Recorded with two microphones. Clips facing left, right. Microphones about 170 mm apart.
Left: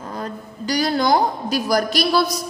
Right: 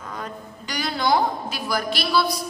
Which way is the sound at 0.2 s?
35° left (ahead or behind).